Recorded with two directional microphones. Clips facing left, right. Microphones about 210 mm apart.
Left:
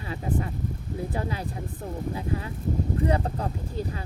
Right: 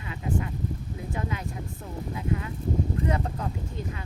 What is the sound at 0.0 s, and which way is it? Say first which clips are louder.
Speech: left 1 dB; 35° left (ahead or behind).